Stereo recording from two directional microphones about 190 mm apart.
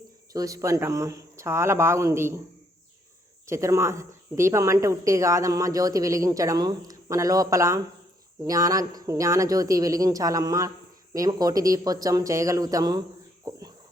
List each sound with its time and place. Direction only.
0.3 s speech: 15° right (ahead or behind)
3.4 s speech: 15° right (ahead or behind)
13.4 s cricket: 20° right (ahead or behind)